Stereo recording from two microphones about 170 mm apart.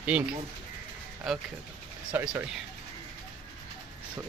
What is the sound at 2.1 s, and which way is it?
Speech, 15° right (ahead or behind).